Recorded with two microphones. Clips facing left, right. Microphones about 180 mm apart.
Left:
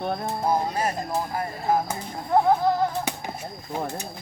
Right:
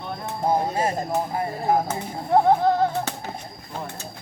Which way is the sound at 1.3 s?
20° right (ahead or behind).